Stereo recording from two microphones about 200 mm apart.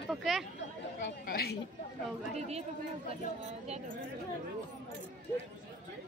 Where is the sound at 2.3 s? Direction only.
35° right (ahead or behind).